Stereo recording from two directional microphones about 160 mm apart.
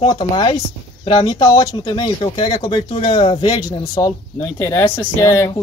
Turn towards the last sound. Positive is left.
turn(degrees=20)  # may be behind; listen again after turning